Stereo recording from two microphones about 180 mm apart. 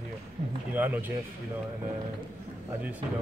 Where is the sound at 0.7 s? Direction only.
10° right (ahead or behind).